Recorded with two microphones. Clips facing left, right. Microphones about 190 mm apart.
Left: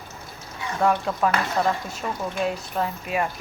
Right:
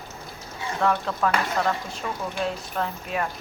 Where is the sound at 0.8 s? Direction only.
10° left (ahead or behind).